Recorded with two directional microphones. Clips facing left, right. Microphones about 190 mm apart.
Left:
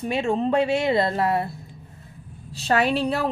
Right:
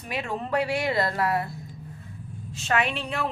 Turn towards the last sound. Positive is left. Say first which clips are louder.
# left 7 dB
turn(degrees=35)  # may be behind; listen again after turning